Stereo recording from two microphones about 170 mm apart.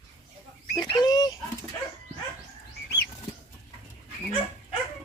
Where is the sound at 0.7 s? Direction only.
25° left (ahead or behind).